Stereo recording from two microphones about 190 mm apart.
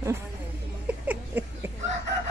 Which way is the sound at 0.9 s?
10° right (ahead or behind).